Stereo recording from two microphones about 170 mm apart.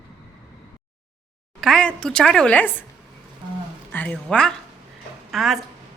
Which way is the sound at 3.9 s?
10° left (ahead or behind).